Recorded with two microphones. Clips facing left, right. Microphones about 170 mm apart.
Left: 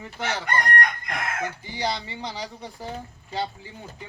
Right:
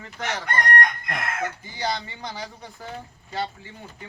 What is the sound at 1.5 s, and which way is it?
Speech, 10° left (ahead or behind).